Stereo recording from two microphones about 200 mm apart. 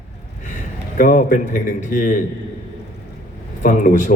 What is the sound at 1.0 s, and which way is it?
A man's voice, 40° left (ahead or behind).